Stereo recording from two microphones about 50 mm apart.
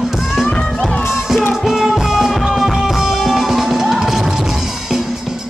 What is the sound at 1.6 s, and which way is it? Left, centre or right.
Music, centre.